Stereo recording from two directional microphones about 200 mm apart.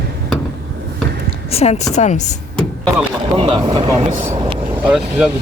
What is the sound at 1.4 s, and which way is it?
Speech, 30° left (ahead or behind).